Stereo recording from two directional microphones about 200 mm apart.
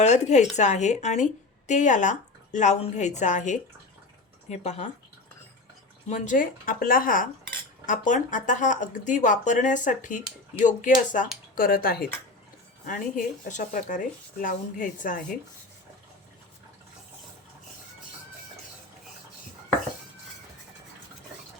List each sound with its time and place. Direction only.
0.0 s a woman's voice: 35° left (ahead or behind)
6.1 s a woman's voice: 40° left (ahead or behind)